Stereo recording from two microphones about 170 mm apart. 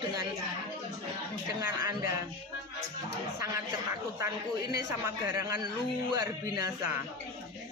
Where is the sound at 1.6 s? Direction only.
20° right (ahead or behind).